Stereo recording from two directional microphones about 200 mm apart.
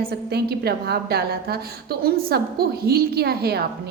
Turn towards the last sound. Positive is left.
turn(degrees=-50)  # may be behind; listen again after turning